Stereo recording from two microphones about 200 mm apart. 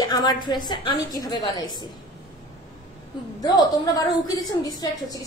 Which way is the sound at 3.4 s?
20° left (ahead or behind).